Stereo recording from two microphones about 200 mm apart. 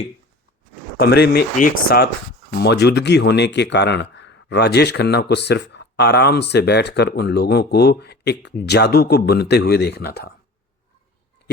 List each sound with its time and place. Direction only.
0.9 s speech: 55° left (ahead or behind)
2.5 s speech: 55° left (ahead or behind)
11.4 s a sound: 55° left (ahead or behind)